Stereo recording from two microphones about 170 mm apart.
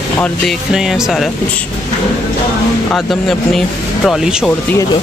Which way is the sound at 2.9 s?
Centre (ahead or behind).